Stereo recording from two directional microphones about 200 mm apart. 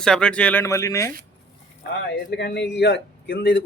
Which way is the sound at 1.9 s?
55° left (ahead or behind).